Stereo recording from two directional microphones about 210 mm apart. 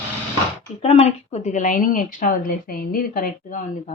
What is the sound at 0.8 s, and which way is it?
A woman's voice, 30° left (ahead or behind).